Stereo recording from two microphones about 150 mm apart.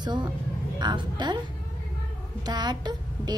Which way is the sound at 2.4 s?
25° right (ahead or behind).